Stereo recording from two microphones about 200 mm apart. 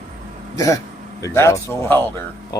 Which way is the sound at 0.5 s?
15° left (ahead or behind).